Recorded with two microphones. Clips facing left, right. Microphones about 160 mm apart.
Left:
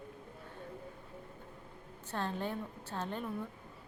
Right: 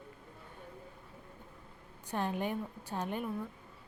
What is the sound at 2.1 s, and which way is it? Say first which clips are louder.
A woman's voice: right 3 dB; 15° right (ahead or behind).